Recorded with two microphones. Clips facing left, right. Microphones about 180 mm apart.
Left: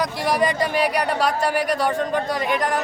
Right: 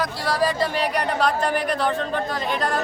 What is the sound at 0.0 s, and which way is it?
A woman's voice, 20° left (ahead or behind).